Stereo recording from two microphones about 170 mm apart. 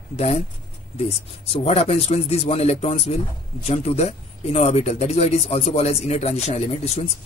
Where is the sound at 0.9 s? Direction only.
35° left (ahead or behind).